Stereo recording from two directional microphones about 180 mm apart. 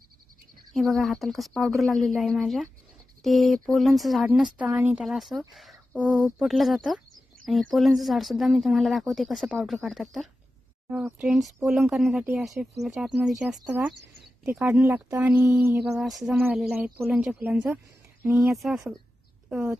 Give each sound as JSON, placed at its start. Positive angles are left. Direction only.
{"t": 0.7, "sound": "speech", "side_deg": 0}
{"t": 13.9, "sound": "a sound", "side_deg": -70}
{"t": 14.4, "sound": "speech", "side_deg": -5}
{"t": 16.3, "sound": "a woman's voice", "side_deg": -10}